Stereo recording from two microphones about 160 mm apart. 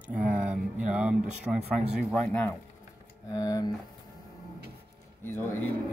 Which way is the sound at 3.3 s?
20° left (ahead or behind).